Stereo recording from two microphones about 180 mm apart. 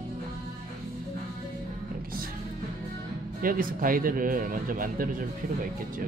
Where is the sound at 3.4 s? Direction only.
50° right (ahead or behind).